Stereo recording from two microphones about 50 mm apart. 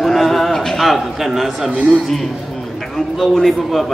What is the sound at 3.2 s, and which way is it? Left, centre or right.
Speech, centre.